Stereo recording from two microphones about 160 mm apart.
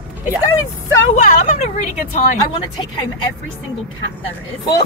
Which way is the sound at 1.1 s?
45° left (ahead or behind).